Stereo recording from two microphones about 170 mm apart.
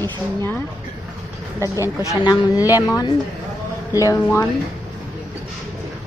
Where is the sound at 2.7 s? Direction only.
20° left (ahead or behind).